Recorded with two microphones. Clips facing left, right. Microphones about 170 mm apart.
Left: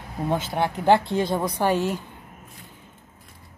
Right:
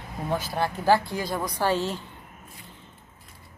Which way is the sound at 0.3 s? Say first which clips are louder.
Left 2 dB; 20° left (ahead or behind).